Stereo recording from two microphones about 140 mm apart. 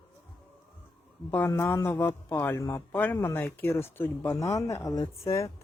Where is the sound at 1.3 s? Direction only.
15° left (ahead or behind).